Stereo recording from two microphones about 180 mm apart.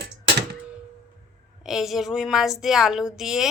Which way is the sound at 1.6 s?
Centre (ahead or behind).